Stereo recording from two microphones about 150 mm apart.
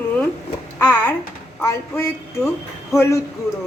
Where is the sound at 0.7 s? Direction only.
15° left (ahead or behind).